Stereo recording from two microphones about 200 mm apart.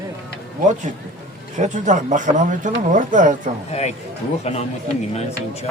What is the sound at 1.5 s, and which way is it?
Speech, 35° right (ahead or behind).